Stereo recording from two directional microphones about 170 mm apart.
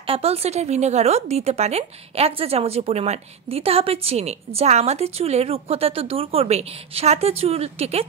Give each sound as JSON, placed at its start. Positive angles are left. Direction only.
{"t": 0.0, "sound": "speech", "side_deg": -35}